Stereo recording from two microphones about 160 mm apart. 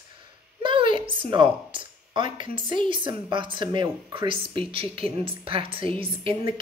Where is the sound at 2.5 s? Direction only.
30° right (ahead or behind).